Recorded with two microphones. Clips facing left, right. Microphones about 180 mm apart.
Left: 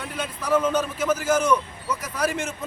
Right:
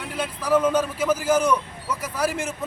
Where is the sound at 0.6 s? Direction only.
10° right (ahead or behind).